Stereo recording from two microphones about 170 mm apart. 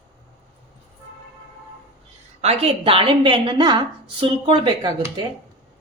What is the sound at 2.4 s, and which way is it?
A woman's voice, 35° right (ahead or behind).